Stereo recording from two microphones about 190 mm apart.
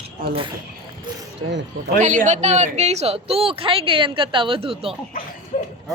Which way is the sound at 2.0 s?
40° right (ahead or behind).